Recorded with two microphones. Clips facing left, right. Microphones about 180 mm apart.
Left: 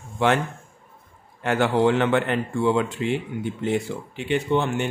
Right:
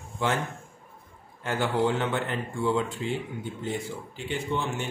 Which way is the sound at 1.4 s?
70° left (ahead or behind).